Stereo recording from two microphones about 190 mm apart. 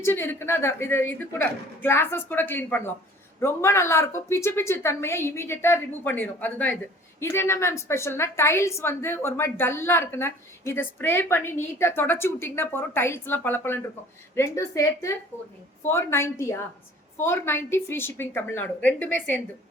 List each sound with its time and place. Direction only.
0.0 s a woman's voice: 10° left (ahead or behind)